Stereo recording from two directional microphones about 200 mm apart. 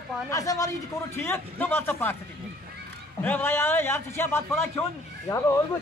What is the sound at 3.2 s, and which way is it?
Speech, 10° left (ahead or behind).